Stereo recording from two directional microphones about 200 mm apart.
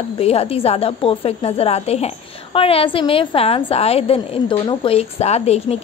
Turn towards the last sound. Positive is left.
turn(degrees=30)  # may be behind; listen again after turning